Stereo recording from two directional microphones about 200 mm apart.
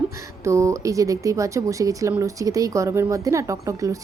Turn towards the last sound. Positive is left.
turn(degrees=-15)  # may be behind; listen again after turning